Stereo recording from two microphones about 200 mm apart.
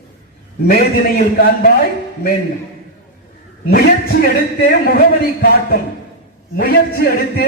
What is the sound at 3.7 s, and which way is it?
A man's voice, 50° left (ahead or behind).